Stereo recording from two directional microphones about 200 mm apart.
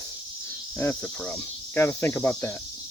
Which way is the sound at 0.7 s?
10° left (ahead or behind).